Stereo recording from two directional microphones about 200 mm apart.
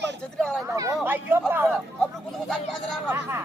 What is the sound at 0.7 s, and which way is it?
Speech, 15° right (ahead or behind).